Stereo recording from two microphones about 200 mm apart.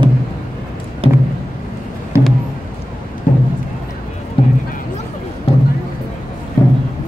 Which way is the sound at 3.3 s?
40° left (ahead or behind).